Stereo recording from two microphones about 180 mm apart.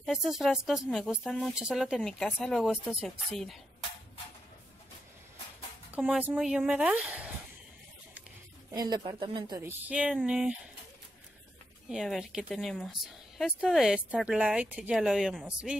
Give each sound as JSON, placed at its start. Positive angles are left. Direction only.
{"t": 0.0, "sound": "a woman's voice", "side_deg": 0}
{"t": 5.9, "sound": "speech", "side_deg": -10}
{"t": 8.7, "sound": "speech", "side_deg": -25}
{"t": 9.6, "sound": "speech", "side_deg": -10}
{"t": 11.9, "sound": "a woman's voice", "side_deg": 0}